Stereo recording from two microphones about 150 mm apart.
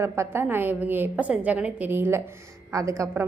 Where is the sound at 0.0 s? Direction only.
15° right (ahead or behind).